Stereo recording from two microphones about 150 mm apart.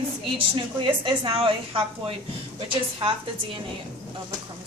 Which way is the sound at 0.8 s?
35° right (ahead or behind).